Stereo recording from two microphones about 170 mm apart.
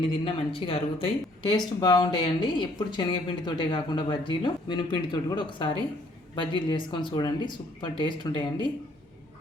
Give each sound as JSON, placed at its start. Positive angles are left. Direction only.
{"t": 0.3, "sound": "speech", "side_deg": 30}